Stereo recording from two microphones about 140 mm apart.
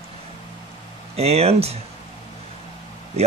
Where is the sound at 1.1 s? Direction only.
45° right (ahead or behind).